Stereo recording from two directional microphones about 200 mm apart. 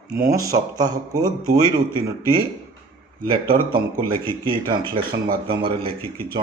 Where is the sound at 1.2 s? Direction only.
45° right (ahead or behind).